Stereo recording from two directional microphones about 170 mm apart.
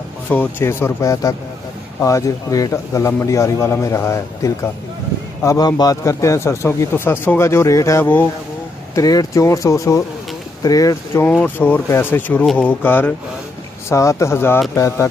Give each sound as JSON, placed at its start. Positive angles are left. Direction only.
{"t": 0.3, "sound": "a man's voice", "side_deg": 10}